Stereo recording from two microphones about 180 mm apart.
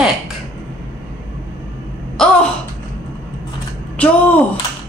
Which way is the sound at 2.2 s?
5° left (ahead or behind).